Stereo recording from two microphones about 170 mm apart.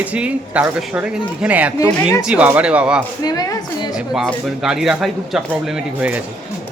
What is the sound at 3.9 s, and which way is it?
Speech, 5° right (ahead or behind).